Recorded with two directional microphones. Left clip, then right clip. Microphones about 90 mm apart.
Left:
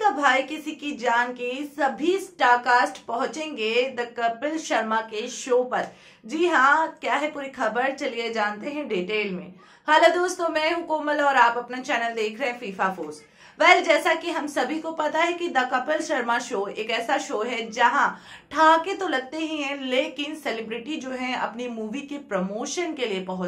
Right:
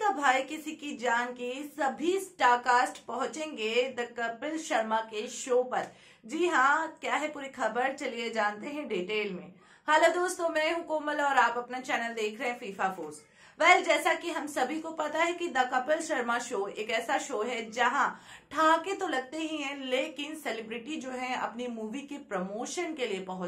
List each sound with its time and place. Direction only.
0.0 s a woman's voice: 25° left (ahead or behind)